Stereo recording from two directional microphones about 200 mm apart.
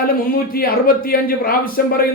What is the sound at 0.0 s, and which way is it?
Speech, 45° left (ahead or behind).